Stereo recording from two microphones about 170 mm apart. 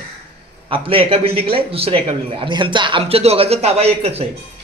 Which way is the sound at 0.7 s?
30° right (ahead or behind).